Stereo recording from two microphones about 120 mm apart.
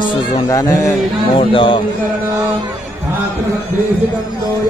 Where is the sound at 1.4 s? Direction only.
45° left (ahead or behind).